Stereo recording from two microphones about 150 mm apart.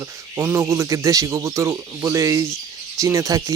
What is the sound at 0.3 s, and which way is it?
Speech, 15° right (ahead or behind).